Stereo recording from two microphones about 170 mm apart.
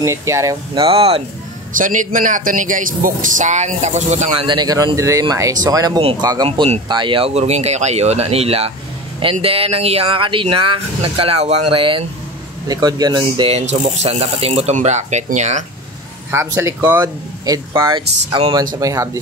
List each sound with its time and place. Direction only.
0.0 s speech: 15° right (ahead or behind)
0.7 s speech: 35° right (ahead or behind)
1.8 s speech: 50° right (ahead or behind)
4.5 s a man's voice: 25° right (ahead or behind); by 15.6 s 45° right (ahead or behind)
16.5 s a man's voice: 15° right (ahead or behind)